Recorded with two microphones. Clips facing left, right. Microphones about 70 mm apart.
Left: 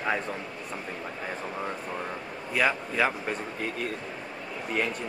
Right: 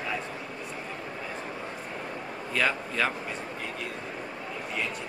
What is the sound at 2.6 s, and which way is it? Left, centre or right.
Speech, centre.